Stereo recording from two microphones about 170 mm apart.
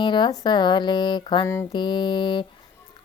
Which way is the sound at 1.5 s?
15° left (ahead or behind).